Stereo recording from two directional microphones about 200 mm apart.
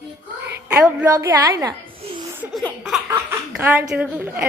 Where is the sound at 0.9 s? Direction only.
15° right (ahead or behind).